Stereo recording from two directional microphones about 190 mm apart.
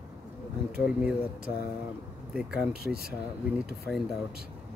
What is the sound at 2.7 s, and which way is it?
Speech, 55° right (ahead or behind).